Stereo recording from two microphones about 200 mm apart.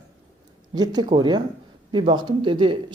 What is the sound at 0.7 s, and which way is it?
Speech, 20° right (ahead or behind).